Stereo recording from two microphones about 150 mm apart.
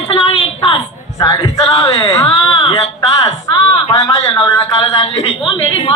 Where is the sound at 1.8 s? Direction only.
40° left (ahead or behind).